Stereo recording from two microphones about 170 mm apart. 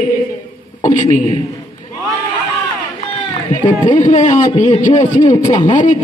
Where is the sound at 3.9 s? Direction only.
45° left (ahead or behind).